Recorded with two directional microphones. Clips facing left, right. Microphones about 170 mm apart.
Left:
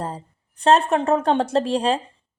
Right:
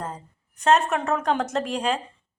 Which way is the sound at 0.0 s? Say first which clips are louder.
Left 4 dB; 30° left (ahead or behind).